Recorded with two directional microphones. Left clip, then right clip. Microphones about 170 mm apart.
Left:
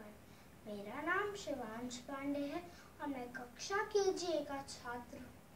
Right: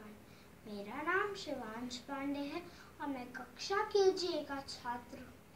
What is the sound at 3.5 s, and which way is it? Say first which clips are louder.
A woman's voice: right 3 dB; 15° left (ahead or behind).